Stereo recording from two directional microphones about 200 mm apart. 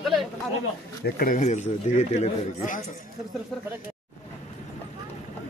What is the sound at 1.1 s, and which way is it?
A man's voice, 45° left (ahead or behind).